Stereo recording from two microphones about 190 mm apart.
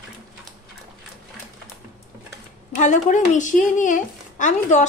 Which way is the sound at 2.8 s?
40° left (ahead or behind).